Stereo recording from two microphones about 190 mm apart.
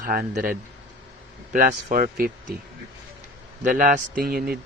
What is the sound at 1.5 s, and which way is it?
Speech, 45° right (ahead or behind).